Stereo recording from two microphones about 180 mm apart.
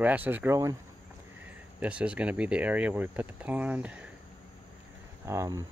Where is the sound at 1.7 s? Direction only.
5° right (ahead or behind).